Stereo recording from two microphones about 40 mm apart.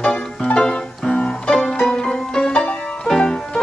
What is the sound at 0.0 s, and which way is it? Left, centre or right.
Music, centre.